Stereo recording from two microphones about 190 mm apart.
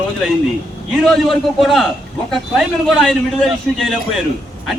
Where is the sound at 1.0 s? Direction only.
Centre (ahead or behind).